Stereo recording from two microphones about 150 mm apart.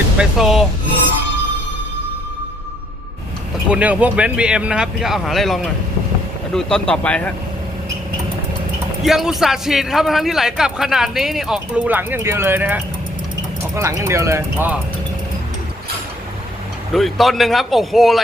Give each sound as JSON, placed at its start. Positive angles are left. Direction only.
{"t": 0.2, "sound": "a man's voice", "side_deg": 0}
{"t": 3.7, "sound": "a man's voice", "side_deg": -10}
{"t": 9.0, "sound": "a man's voice", "side_deg": 0}
{"t": 16.9, "sound": "a man's voice", "side_deg": 0}